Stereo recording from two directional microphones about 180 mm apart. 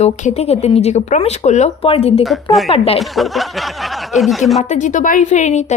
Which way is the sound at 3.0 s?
Centre (ahead or behind).